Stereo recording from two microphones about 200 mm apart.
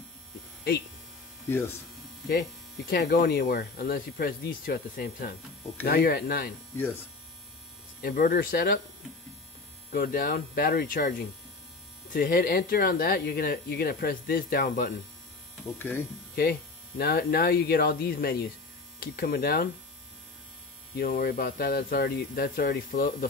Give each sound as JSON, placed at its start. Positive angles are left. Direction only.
{"t": 2.9, "sound": "speech", "side_deg": 55}
{"t": 8.0, "sound": "speech", "side_deg": 45}
{"t": 9.8, "sound": "speech", "side_deg": 45}
{"t": 15.8, "sound": "speech", "side_deg": 10}
{"t": 16.3, "sound": "speech", "side_deg": 50}
{"t": 20.9, "sound": "speech", "side_deg": 45}